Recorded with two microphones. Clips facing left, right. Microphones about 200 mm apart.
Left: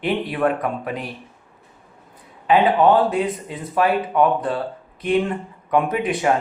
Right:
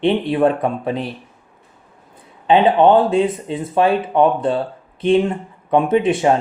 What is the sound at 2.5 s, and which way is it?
Speech, 25° right (ahead or behind).